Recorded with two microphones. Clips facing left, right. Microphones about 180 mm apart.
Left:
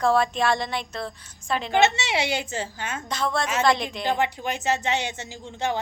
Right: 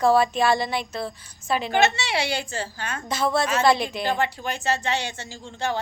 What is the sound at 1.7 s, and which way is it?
Speech, 25° left (ahead or behind).